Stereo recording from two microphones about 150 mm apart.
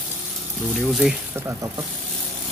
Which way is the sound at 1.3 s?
15° right (ahead or behind).